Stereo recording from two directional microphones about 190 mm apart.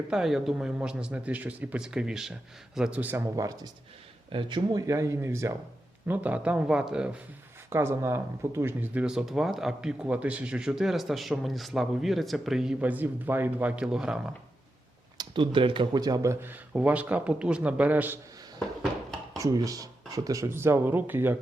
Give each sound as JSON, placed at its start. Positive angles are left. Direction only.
{"t": 0.1, "sound": "speech", "side_deg": 0}
{"t": 15.2, "sound": "speech", "side_deg": -25}
{"t": 18.8, "sound": "a sound", "side_deg": 0}
{"t": 19.4, "sound": "speech", "side_deg": -20}